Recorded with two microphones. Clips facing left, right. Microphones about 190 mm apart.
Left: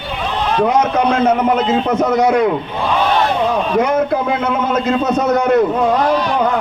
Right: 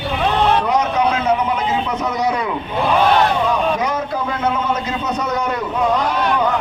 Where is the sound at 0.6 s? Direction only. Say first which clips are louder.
Left 3 dB; 50° left (ahead or behind).